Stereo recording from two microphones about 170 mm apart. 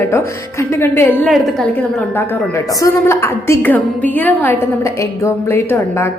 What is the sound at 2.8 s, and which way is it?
Speech, 15° left (ahead or behind).